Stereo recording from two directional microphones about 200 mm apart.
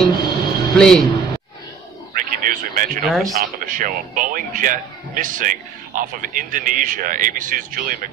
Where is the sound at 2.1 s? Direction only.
45° right (ahead or behind).